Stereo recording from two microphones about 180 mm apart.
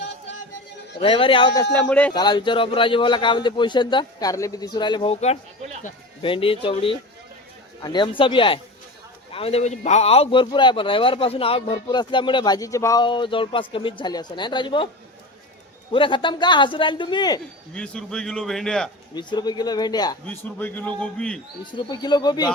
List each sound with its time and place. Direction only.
0.9 s speech: 30° left (ahead or behind)
1.7 s a man's voice: 10° left (ahead or behind)
2.1 s speech: 25° left (ahead or behind)
15.9 s speech: 25° left (ahead or behind)
17.7 s a man's voice: 5° left (ahead or behind)
19.1 s speech: 25° left (ahead or behind)
20.2 s a man's voice: 10° left (ahead or behind)
21.7 s speech: 25° left (ahead or behind)